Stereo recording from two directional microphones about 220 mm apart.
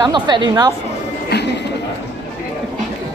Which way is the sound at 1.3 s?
50° left (ahead or behind).